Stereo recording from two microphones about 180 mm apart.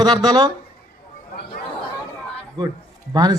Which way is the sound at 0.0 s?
25° right (ahead or behind).